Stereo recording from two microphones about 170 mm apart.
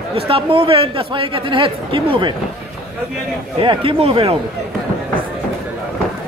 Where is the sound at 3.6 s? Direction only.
30° right (ahead or behind).